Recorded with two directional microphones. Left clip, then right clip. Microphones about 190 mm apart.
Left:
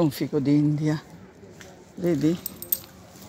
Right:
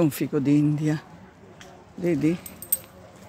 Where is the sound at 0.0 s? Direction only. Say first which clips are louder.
Right 1 dB; 30° right (ahead or behind).